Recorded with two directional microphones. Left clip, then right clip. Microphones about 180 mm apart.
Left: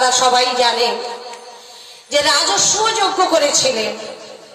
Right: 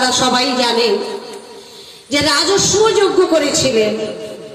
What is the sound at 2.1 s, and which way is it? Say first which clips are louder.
Speech: right 1 dB; 45° left (ahead or behind).